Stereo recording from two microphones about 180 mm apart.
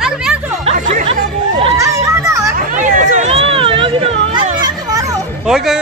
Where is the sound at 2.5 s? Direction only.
45° right (ahead or behind); by 4.5 s 30° right (ahead or behind).